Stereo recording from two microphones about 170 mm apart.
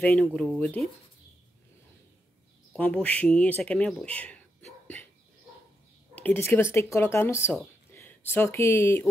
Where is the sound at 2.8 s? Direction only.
10° left (ahead or behind).